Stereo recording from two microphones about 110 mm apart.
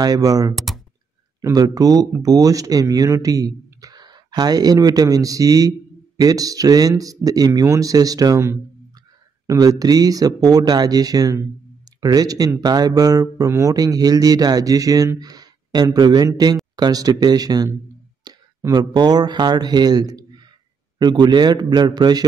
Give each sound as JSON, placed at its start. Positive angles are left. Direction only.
{"t": 0.0, "sound": "speech", "side_deg": -35}
{"t": 0.6, "sound": "typing", "side_deg": 0}
{"t": 1.4, "sound": "speech", "side_deg": -35}